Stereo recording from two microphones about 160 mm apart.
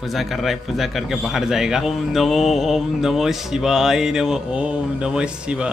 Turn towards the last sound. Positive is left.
turn(degrees=-5)  # may be behind; listen again after turning